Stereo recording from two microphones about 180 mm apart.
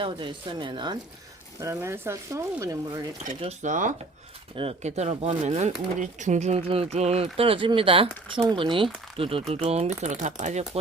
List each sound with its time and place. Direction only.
0.0 s speech: 25° right (ahead or behind)
1.6 s speech: 15° right (ahead or behind)
3.6 s speech: 45° right (ahead or behind)